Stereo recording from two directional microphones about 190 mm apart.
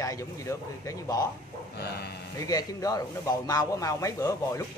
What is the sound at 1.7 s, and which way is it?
Speech, 55° left (ahead or behind).